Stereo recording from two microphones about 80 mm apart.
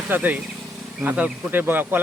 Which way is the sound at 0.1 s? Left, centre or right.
Right.